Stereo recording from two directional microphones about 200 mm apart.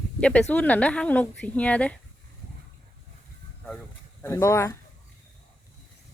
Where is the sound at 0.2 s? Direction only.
5° left (ahead or behind).